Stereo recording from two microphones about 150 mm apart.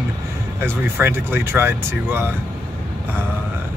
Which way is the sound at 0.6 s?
15° right (ahead or behind).